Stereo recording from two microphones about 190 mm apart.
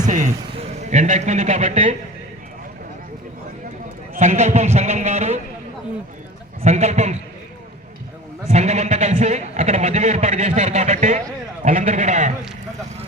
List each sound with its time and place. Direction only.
0.0 s speech: 40° right (ahead or behind)
4.1 s speech: 40° right (ahead or behind)
6.6 s speech: 35° right (ahead or behind)
8.4 s speech: 35° right (ahead or behind)